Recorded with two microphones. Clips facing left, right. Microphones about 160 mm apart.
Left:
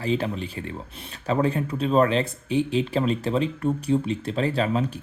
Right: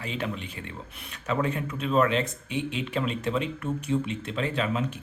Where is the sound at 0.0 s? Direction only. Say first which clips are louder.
Left 7 dB; 35° left (ahead or behind).